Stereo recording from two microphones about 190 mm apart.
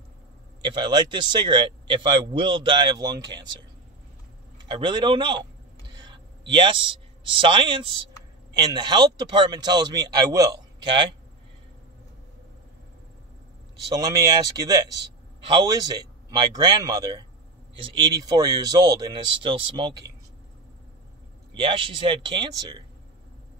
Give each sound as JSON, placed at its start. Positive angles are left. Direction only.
{"t": 0.6, "sound": "speech", "side_deg": -25}
{"t": 4.6, "sound": "speech", "side_deg": -25}
{"t": 6.5, "sound": "speech", "side_deg": -25}
{"t": 13.9, "sound": "speech", "side_deg": -20}
{"t": 21.5, "sound": "speech", "side_deg": -25}